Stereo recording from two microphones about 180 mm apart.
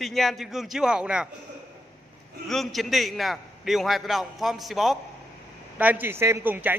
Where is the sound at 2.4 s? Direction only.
Centre (ahead or behind).